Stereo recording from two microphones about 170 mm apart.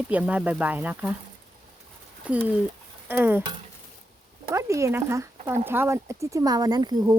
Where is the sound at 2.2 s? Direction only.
10° right (ahead or behind).